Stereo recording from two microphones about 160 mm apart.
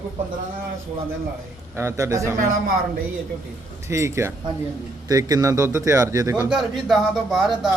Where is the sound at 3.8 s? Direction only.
15° right (ahead or behind).